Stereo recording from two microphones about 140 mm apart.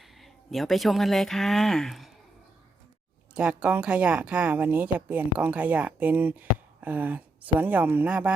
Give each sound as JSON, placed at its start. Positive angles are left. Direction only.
{"t": 0.2, "sound": "speech", "side_deg": 0}
{"t": 3.3, "sound": "speech", "side_deg": -5}